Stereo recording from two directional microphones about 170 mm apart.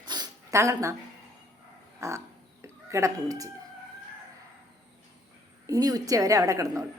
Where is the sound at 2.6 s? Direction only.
15° right (ahead or behind).